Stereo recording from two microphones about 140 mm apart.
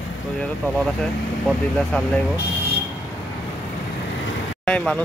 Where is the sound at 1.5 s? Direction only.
10° left (ahead or behind).